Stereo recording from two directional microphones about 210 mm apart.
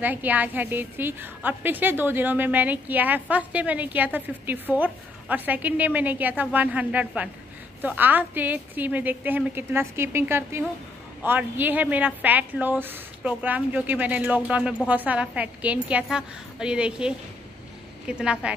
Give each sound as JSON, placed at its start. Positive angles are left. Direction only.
{"t": 0.0, "sound": "a woman's voice", "side_deg": -10}